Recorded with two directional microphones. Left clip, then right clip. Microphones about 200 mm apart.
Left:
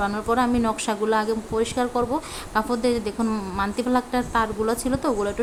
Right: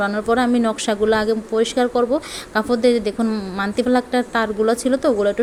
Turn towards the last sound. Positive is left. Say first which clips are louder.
# right 7 dB
turn(degrees=-15)  # may be behind; listen again after turning